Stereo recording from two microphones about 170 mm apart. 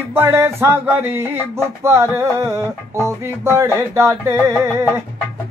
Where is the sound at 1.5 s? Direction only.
15° right (ahead or behind).